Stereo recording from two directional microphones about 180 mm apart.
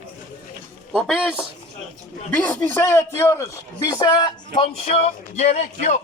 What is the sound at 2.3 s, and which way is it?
A man's voice, 10° left (ahead or behind).